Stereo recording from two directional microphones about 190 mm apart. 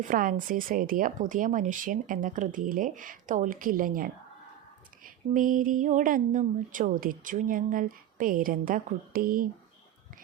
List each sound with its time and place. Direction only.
0.0 s speech: 45° right (ahead or behind)